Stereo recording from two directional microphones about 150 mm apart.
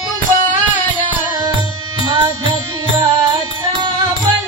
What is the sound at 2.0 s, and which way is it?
Music, 35° right (ahead or behind).